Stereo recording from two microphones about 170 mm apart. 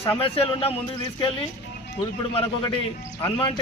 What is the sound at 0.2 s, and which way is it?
Speech, 35° left (ahead or behind).